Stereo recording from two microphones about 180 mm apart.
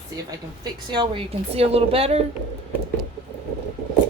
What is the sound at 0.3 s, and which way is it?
A woman's voice, 25° right (ahead or behind).